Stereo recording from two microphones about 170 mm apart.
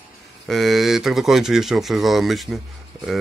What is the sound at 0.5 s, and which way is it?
Speech, centre (ahead or behind).